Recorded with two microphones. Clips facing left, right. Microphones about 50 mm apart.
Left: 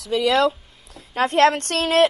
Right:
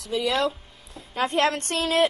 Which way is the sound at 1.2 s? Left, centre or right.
Left.